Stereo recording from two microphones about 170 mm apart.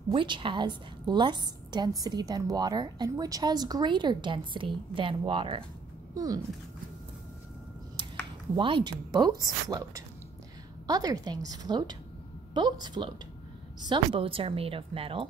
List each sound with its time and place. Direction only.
0.1 s a woman's voice: 30° right (ahead or behind)
8.5 s a woman's voice: 30° right (ahead or behind)